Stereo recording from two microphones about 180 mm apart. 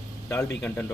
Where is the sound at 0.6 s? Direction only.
10° left (ahead or behind).